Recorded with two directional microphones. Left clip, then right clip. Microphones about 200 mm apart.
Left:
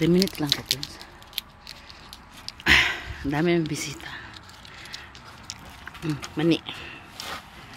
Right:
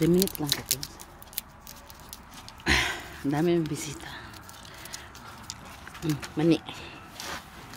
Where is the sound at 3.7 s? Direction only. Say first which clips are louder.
Left 4 dB; centre (ahead or behind).